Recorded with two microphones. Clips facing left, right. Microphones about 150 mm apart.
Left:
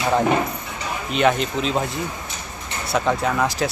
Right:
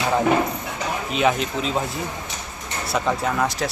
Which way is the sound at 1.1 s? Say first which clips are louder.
Left 3 dB; centre (ahead or behind).